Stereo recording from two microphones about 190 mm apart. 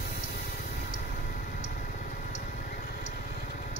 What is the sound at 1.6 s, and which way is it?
Vehicle, 45° left (ahead or behind).